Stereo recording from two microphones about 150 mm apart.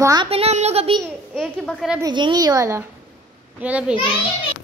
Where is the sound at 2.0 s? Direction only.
30° right (ahead or behind).